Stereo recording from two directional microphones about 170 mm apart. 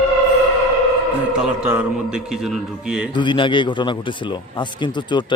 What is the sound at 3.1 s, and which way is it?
A man's voice, 30° left (ahead or behind).